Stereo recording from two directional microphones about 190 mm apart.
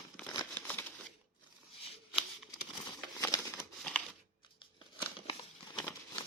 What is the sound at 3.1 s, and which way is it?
Crumpling, 15° left (ahead or behind).